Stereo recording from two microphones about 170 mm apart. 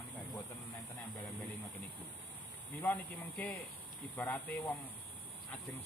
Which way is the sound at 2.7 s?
15° left (ahead or behind).